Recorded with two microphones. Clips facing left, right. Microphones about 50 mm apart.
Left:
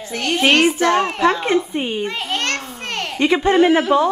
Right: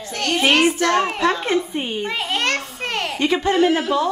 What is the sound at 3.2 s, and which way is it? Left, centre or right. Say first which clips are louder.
Speech: left 4 dB; centre.